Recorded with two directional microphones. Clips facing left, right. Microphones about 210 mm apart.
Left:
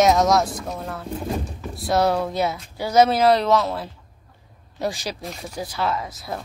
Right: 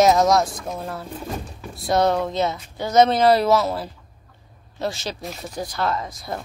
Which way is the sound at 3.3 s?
5° right (ahead or behind).